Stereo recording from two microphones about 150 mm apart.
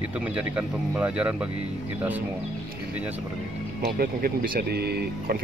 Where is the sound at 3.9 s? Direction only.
80° right.